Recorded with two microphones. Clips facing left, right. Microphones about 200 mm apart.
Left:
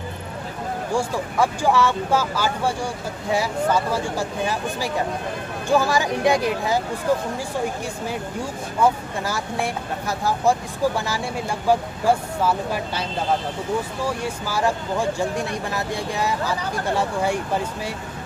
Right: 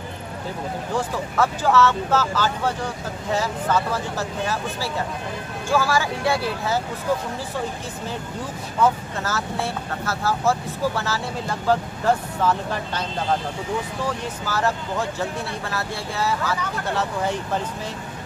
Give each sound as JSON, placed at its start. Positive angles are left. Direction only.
{"t": 0.9, "sound": "speech", "side_deg": 10}
{"t": 8.8, "sound": "speech", "side_deg": 15}
{"t": 14.0, "sound": "speech", "side_deg": 10}